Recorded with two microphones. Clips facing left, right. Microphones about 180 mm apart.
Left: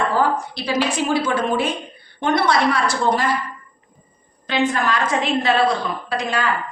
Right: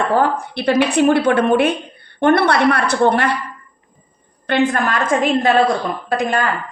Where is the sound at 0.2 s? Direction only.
60° right (ahead or behind).